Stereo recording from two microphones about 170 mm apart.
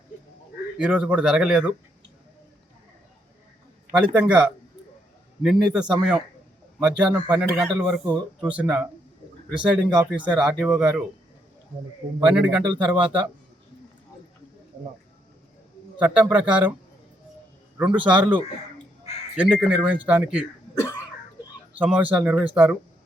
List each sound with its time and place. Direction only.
0.8 s speech: 5° right (ahead or behind)
3.9 s speech: 5° right (ahead or behind)
12.2 s speech: 5° right (ahead or behind)
16.0 s speech: 10° right (ahead or behind)
17.7 s speech: 10° right (ahead or behind)
19.4 s speech: 5° right (ahead or behind)
20.7 s cough: 15° left (ahead or behind)
21.8 s speech: 5° right (ahead or behind)